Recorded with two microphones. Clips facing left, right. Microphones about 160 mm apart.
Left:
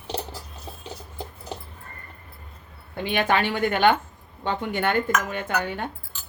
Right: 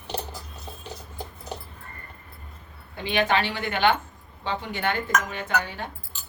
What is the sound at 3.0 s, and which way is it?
A woman's voice, 50° left (ahead or behind).